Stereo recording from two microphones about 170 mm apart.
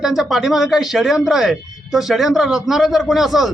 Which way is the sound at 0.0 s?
Centre (ahead or behind).